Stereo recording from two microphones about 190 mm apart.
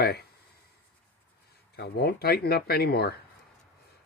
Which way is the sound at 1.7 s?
55° left (ahead or behind).